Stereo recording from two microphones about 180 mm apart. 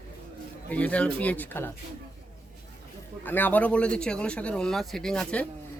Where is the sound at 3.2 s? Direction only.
10° left (ahead or behind).